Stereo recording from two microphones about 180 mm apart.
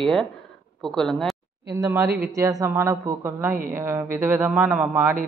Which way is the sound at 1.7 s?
15° right (ahead or behind).